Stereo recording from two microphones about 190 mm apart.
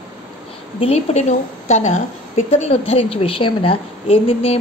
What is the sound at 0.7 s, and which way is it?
A woman's voice, 35° left (ahead or behind).